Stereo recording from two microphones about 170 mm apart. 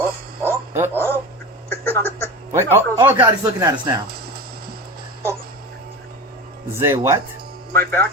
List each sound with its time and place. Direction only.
0.4 s a sound: 15° right (ahead or behind)
0.9 s speech: 15° left (ahead or behind)
1.7 s a sound: 15° left (ahead or behind)
2.5 s speech: 15° right (ahead or behind)
6.7 s speech: 15° right (ahead or behind)
7.8 s a man's voice: 10° left (ahead or behind)